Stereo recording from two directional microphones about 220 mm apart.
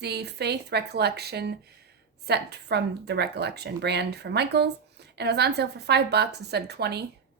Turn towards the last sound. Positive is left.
turn(degrees=-50)  # may be behind; listen again after turning